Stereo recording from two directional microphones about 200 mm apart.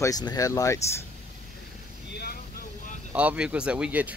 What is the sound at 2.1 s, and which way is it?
Vehicle, 50° left (ahead or behind).